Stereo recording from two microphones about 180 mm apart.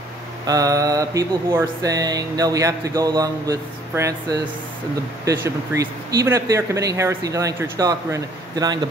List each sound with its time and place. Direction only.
0.5 s mantra: 20° right (ahead or behind)
5.2 s speech: 15° right (ahead or behind)